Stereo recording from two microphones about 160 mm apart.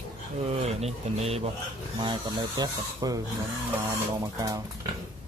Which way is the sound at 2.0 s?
30° right (ahead or behind).